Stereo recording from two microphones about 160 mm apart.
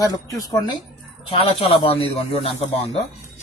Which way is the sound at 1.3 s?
35° left (ahead or behind).